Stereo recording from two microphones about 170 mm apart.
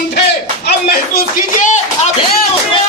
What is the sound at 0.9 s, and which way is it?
Speech, 55° left (ahead or behind).